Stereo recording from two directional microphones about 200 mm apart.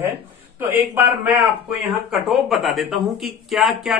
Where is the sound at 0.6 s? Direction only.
10° right (ahead or behind).